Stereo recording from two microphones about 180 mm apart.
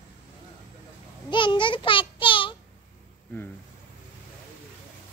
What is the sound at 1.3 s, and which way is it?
Child singing, 25° left (ahead or behind).